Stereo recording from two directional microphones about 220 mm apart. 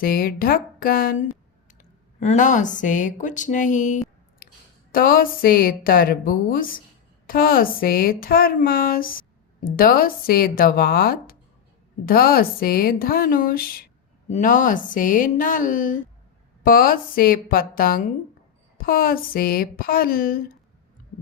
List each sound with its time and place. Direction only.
0.0 s speech: 40° left (ahead or behind)